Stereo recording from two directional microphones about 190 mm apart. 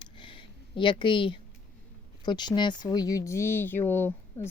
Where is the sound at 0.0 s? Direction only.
25° left (ahead or behind).